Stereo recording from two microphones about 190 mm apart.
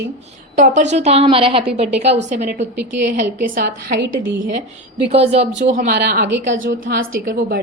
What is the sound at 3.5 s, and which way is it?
Speech, 55° right (ahead or behind).